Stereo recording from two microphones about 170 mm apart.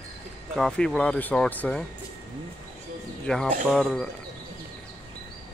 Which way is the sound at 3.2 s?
5° left (ahead or behind).